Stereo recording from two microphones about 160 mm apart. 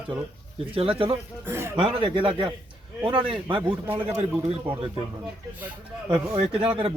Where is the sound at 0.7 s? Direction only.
35° right (ahead or behind).